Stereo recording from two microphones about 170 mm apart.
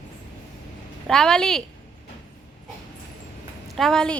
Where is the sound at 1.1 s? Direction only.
5° left (ahead or behind).